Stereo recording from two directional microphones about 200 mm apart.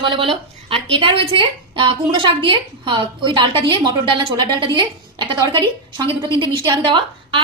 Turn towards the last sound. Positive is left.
turn(degrees=-25)  # may be behind; listen again after turning